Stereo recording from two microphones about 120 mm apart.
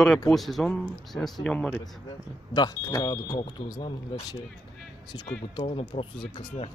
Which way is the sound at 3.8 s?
45° left (ahead or behind).